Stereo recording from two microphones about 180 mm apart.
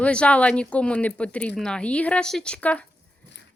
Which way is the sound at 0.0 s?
5° left (ahead or behind).